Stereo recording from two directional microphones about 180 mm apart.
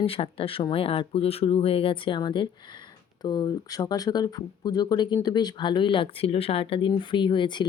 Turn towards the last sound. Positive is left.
turn(degrees=25)  # may be behind; listen again after turning